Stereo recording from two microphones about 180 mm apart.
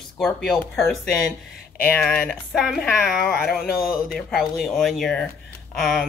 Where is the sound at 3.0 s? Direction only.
55° left (ahead or behind).